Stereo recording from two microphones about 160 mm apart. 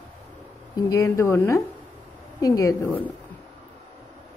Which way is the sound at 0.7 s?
25° left (ahead or behind).